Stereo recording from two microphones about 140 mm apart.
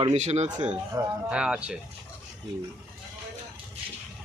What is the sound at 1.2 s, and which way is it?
Speech, 5° right (ahead or behind).